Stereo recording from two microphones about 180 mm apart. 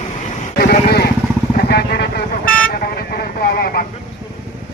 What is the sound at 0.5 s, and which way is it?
Vehicle, 60° left (ahead or behind).